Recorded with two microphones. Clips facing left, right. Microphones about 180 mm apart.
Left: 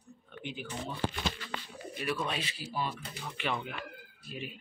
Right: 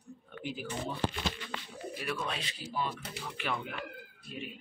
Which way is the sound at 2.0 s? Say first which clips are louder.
Left 3 dB; 5° left (ahead or behind).